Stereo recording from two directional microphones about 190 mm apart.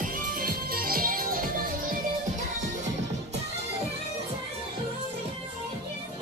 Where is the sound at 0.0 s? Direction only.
45° right (ahead or behind).